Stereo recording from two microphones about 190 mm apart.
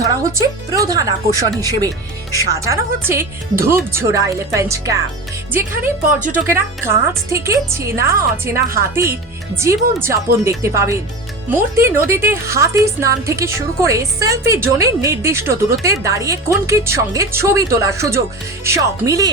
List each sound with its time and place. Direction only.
0.0 s a woman's voice: 15° right (ahead or behind)
5.8 s a woman's voice: 45° right (ahead or behind)
6.3 s a woman's voice: 10° right (ahead or behind)